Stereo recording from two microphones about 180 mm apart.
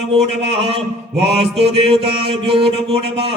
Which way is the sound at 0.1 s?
35° right (ahead or behind).